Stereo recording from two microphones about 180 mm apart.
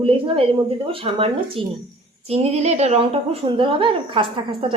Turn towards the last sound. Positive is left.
turn(degrees=-30)  # may be behind; listen again after turning